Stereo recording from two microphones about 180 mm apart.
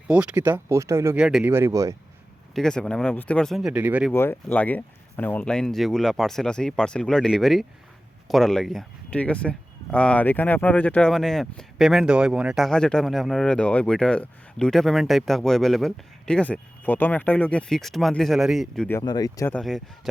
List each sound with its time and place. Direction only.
0.1 s speech: 5° right (ahead or behind)
1.2 s speech: 5° right (ahead or behind)
2.6 s speech: 5° left (ahead or behind)
4.1 s speech: 15° left (ahead or behind)
18.9 s speech: 20° left (ahead or behind)
19.5 s speech: centre (ahead or behind)